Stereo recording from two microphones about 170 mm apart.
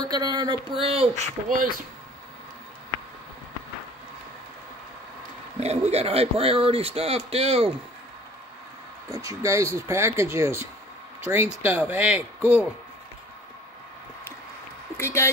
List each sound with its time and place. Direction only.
0.0 s speech: 25° right (ahead or behind)
5.6 s speech: 40° right (ahead or behind)
9.1 s speech: 20° right (ahead or behind)
15.0 s speech: 15° left (ahead or behind)